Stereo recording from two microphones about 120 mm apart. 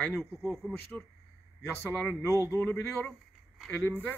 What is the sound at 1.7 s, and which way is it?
Speech, 15° left (ahead or behind).